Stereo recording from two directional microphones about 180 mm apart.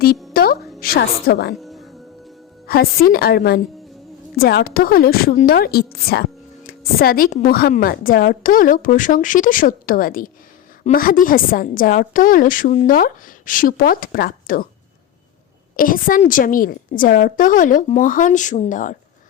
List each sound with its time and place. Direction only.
0.3 s music: 55° left (ahead or behind)
1.6 s music: centre (ahead or behind)
2.6 s a woman's voice: 55° left (ahead or behind)
15.7 s a woman's voice: 50° left (ahead or behind)